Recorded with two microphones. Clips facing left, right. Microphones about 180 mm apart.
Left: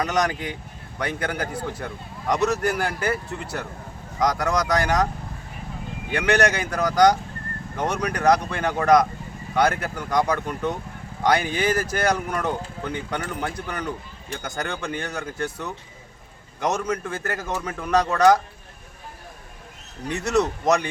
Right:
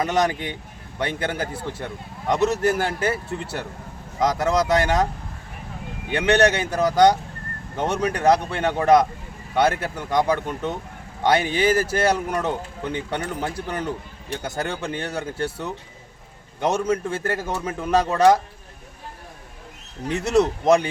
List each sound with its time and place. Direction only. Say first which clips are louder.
0.0 s speech: right 2 dB; 25° right (ahead or behind)
6.1 s speech: right 3 dB; 25° right (ahead or behind)
20.1 s speech: right 3 dB; 30° right (ahead or behind)